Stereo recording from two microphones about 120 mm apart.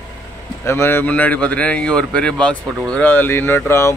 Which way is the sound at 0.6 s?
20° left (ahead or behind).